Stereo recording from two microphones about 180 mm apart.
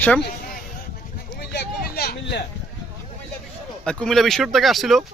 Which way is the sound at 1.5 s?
60° left (ahead or behind).